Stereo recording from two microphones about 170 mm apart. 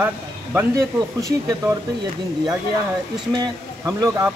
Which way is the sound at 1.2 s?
20° right (ahead or behind).